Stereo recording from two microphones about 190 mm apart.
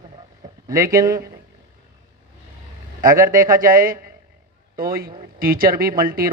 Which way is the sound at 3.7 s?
45° right (ahead or behind).